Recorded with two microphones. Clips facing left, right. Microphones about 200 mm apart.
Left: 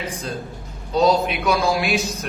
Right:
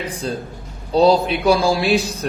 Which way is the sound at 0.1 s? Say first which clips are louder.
Right 4 dB; 35° right (ahead or behind).